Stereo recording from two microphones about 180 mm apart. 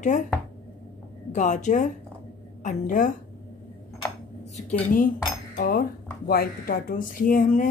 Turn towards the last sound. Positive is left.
turn(degrees=45)  # may be behind; listen again after turning